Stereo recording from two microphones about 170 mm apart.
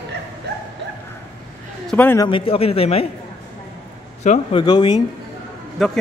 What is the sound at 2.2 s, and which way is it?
Speech, 30° left (ahead or behind).